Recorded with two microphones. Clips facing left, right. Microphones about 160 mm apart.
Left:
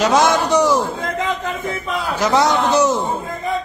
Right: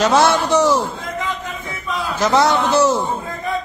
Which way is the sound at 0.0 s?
10° left (ahead or behind).